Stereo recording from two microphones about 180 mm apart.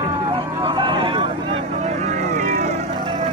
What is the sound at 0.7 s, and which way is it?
Vehicle, 25° right (ahead or behind).